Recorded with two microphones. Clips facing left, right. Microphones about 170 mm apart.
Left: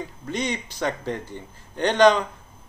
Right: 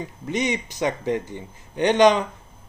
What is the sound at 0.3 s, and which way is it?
Speech, 15° right (ahead or behind).